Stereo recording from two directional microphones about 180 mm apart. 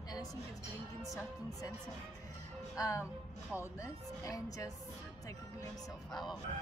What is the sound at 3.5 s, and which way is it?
A woman's voice, 20° left (ahead or behind).